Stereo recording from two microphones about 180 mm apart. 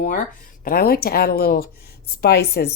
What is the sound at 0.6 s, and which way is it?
Speech, 55° left (ahead or behind).